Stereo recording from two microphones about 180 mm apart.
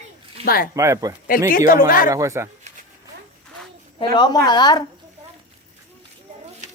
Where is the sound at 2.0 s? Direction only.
15° right (ahead or behind).